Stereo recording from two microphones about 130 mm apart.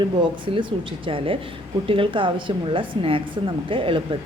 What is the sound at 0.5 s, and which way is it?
A woman's voice, 40° right (ahead or behind).